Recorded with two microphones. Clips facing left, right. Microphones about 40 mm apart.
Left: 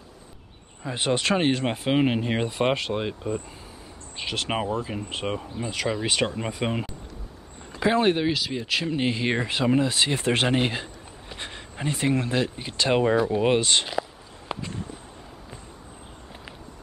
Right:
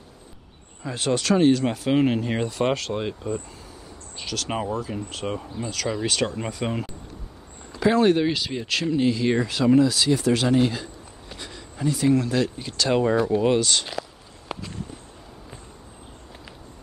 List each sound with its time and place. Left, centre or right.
0.8 s speech: left
1.9 s speech: centre
4.2 s speech: left
5.4 s speech: centre
5.7 s speech: left
8.3 s speech: centre
8.9 s speech: left
13.1 s speech: centre
13.4 s speech: left
14.5 s a sound: centre